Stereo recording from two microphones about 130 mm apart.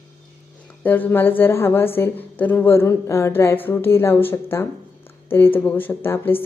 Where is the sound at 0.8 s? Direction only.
15° left (ahead or behind).